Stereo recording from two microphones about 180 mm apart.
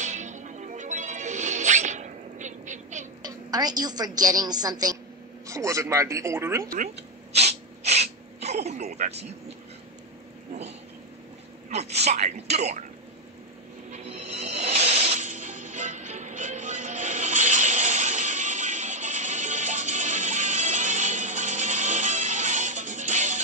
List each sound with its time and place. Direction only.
0.0 s music: 40° right (ahead or behind)
3.2 s a woman's voice: 20° right (ahead or behind)
6.7 s sneeze: 40° right (ahead or behind)
11.7 s speech: 35° right (ahead or behind)
13.9 s music: 40° right (ahead or behind)